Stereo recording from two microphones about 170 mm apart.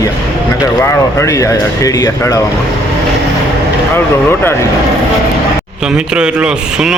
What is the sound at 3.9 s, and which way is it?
Speech, 10° left (ahead or behind).